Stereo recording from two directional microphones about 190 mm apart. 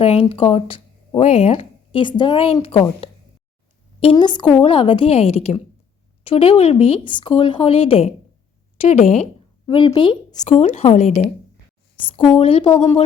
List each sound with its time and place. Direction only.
0.0 s speech: 30° left (ahead or behind)
10.4 s speech: 35° left (ahead or behind)
11.9 s speech: 25° left (ahead or behind)